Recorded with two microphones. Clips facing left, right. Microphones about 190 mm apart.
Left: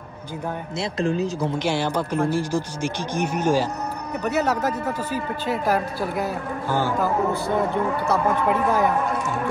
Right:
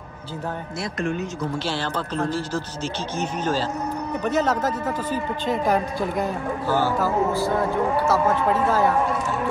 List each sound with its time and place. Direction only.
0.7 s speech: 30° left (ahead or behind)
1.6 s a man's voice: 15° left (ahead or behind)
6.7 s a man's voice: 15° left (ahead or behind)
8.1 s a man's voice: 15° left (ahead or behind)